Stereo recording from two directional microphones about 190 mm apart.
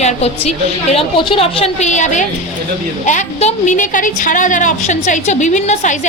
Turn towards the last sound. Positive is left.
turn(degrees=40)  # may be behind; listen again after turning